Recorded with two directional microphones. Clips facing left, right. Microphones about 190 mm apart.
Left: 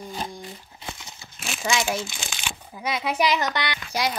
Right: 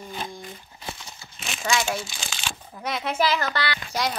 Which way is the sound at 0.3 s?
20° left (ahead or behind).